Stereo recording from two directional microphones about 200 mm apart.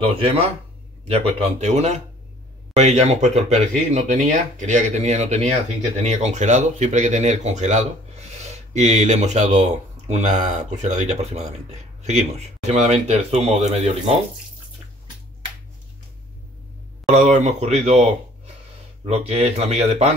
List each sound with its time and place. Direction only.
0.1 s speech: 30° right (ahead or behind)
17.1 s speech: 35° right (ahead or behind)
19.0 s speech: 30° right (ahead or behind)